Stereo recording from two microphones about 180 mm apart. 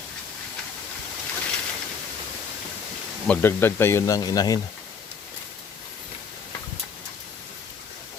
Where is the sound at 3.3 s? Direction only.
10° left (ahead or behind).